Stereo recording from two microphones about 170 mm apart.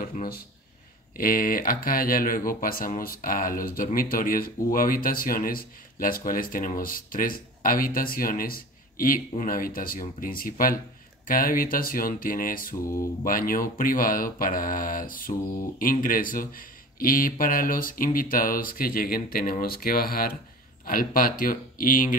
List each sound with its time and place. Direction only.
0.0 s speech: 55° left (ahead or behind)